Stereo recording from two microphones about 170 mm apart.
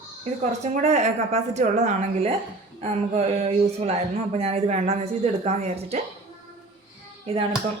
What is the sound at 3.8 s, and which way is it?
Speech, 40° right (ahead or behind).